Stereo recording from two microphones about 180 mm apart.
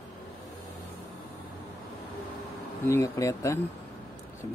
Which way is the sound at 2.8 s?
15° left (ahead or behind).